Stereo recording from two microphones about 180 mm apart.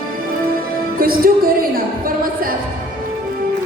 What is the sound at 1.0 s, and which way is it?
Music, 55° right (ahead or behind).